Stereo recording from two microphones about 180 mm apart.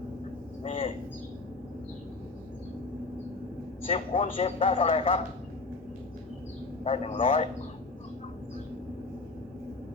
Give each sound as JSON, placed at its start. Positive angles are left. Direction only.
{"t": 0.6, "sound": "a sound", "side_deg": 30}
{"t": 3.8, "sound": "a man's voice", "side_deg": 45}
{"t": 4.4, "sound": "speech", "side_deg": 30}
{"t": 6.8, "sound": "a man's voice", "side_deg": 35}